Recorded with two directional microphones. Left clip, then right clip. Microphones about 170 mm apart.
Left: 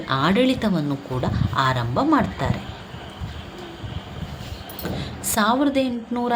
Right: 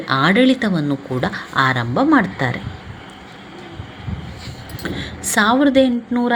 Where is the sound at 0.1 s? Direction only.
15° right (ahead or behind).